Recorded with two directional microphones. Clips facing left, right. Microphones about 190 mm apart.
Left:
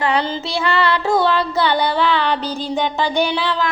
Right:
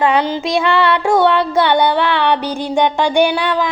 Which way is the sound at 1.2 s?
70° right (ahead or behind).